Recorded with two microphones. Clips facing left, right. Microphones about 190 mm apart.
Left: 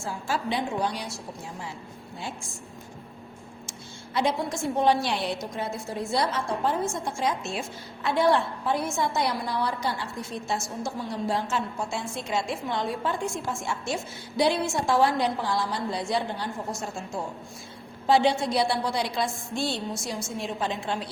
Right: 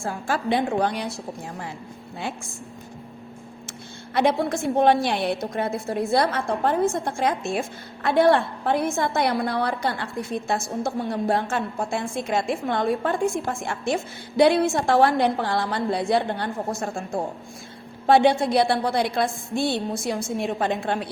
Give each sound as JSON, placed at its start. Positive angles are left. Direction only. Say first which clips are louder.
{"t": 0.0, "sound": "a woman's voice", "louder": "right 4 dB", "side_deg": -55}
{"t": 3.7, "sound": "a woman's voice", "louder": "right 1 dB", "side_deg": -60}